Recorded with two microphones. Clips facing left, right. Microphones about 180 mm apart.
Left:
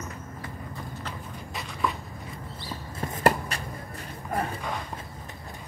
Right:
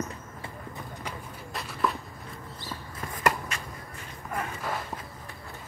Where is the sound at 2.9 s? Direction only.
30° left (ahead or behind).